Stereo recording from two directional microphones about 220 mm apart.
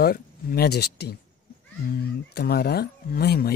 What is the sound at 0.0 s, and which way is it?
Speech, 45° left (ahead or behind).